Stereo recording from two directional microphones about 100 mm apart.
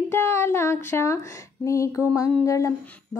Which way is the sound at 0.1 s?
25° left (ahead or behind).